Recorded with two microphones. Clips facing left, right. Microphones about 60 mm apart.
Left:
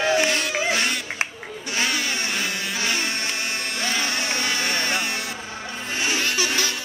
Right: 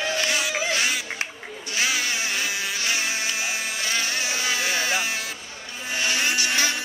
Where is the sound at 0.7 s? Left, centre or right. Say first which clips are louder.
Left 1 dB; centre.